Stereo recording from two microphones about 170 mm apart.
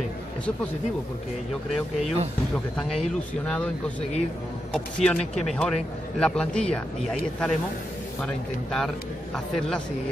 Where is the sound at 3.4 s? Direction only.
5° left (ahead or behind).